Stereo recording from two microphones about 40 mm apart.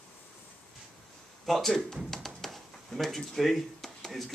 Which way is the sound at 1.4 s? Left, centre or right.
Centre.